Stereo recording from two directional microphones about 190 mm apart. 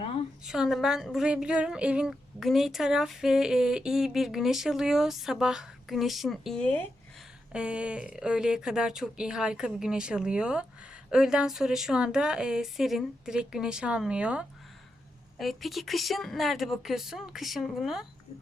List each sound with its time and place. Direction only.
0.0 s a sound: 30° left (ahead or behind)
0.4 s speech: centre (ahead or behind)
7.5 s speech: 5° right (ahead or behind)